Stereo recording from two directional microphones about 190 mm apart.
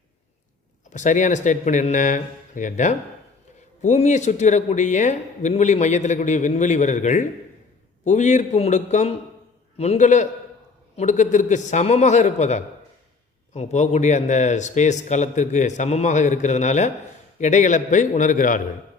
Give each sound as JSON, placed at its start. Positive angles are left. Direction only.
{"t": 0.9, "sound": "speech", "side_deg": 40}